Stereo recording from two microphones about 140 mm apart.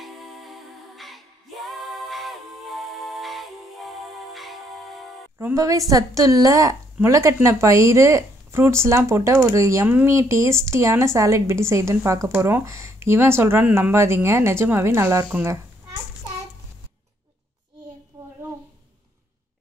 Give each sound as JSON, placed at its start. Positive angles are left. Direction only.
{"t": 0.0, "sound": "music", "side_deg": 0}
{"t": 5.4, "sound": "a woman's voice", "side_deg": -20}
{"t": 18.2, "sound": "a sound", "side_deg": -25}